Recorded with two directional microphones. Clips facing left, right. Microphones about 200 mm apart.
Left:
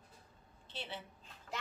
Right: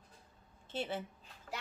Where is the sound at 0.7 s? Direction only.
50° right (ahead or behind).